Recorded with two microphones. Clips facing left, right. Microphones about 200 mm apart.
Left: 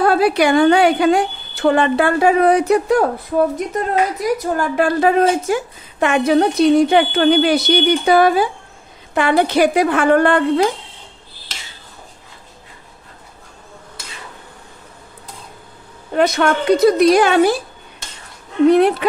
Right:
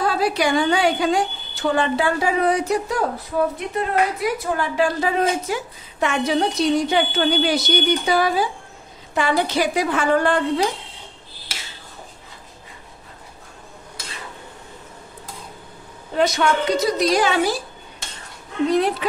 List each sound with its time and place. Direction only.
0.0 s a woman's voice: 60° left (ahead or behind)
3.5 s a woman's voice: 40° left (ahead or behind); by 10.7 s 60° left (ahead or behind)
16.2 s a woman's voice: 55° left (ahead or behind)
18.7 s a woman's voice: 60° left (ahead or behind)